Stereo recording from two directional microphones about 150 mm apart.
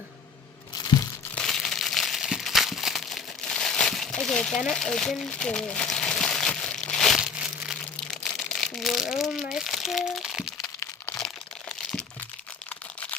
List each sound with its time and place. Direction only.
1.4 s crumpling: 5° left (ahead or behind)
9.3 s speech: centre (ahead or behind)
10.6 s crack: 20° left (ahead or behind)
11.7 s crumpling: 5° left (ahead or behind)